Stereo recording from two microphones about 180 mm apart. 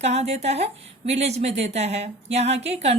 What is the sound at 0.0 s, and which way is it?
A woman's voice, 35° right (ahead or behind).